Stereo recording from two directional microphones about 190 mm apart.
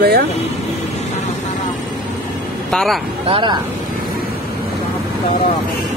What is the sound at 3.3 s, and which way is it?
Speech, 25° right (ahead or behind).